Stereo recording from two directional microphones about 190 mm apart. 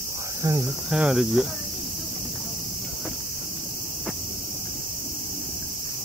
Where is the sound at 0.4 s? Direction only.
15° right (ahead or behind).